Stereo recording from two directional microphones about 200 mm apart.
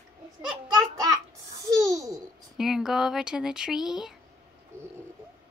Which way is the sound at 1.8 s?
15° right (ahead or behind).